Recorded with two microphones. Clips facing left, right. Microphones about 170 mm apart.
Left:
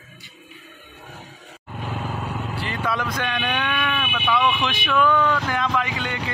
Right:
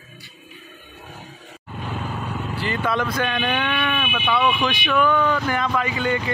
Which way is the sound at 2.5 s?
Centre (ahead or behind).